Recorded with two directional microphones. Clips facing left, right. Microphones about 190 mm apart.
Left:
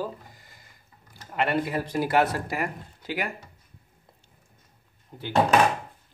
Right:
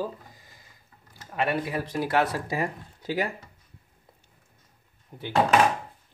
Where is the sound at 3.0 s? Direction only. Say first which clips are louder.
Right 3 dB; 35° right (ahead or behind).